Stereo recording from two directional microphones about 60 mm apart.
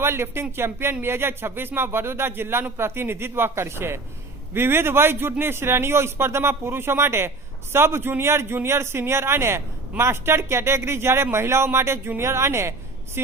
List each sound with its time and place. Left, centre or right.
0.0 s a man's voice: right